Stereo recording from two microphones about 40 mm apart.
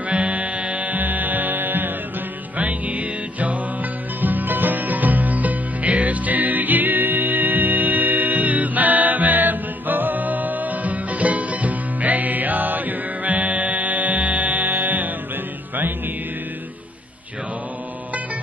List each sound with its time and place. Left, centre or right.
0.1 s music: right
2.5 s music: right